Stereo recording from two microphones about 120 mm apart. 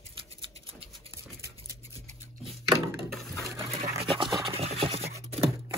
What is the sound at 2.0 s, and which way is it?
Scissors, 75° right (ahead or behind).